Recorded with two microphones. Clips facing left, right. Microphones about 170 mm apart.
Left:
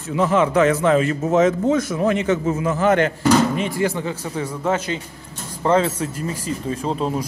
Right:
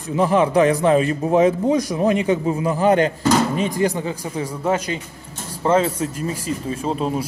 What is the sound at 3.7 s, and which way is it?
A man's voice, 15° right (ahead or behind).